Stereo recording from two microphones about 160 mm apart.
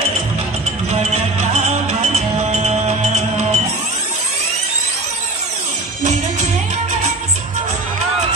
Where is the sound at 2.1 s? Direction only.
40° right (ahead or behind).